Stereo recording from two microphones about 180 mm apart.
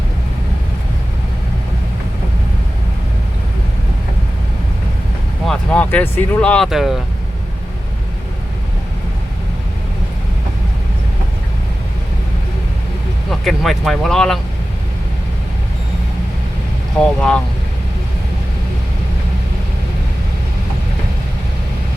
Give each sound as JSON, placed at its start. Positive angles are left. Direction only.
{"t": 5.5, "sound": "speech", "side_deg": 10}
{"t": 13.4, "sound": "speech", "side_deg": 0}
{"t": 17.0, "sound": "speech", "side_deg": 5}